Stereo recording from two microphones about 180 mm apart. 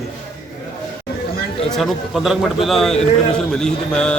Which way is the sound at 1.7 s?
Centre (ahead or behind).